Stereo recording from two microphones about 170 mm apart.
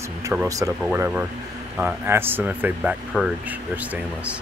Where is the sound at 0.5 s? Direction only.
20° right (ahead or behind).